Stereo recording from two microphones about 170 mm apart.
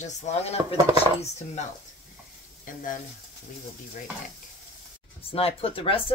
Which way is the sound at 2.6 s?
50° left (ahead or behind).